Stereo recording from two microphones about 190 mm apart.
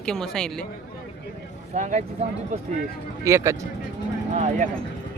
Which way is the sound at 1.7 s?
40° right (ahead or behind).